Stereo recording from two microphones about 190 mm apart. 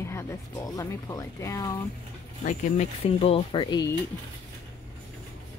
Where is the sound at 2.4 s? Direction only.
35° left (ahead or behind).